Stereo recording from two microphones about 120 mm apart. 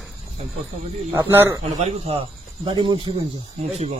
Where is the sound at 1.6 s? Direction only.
60° right (ahead or behind).